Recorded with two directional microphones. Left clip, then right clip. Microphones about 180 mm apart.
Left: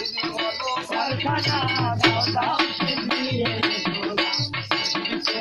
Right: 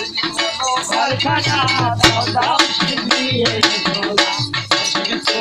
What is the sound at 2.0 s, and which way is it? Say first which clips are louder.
Music: right 5 dB; 40° left (ahead or behind).